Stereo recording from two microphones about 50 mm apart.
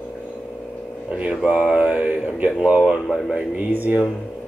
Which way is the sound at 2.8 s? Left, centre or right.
Centre.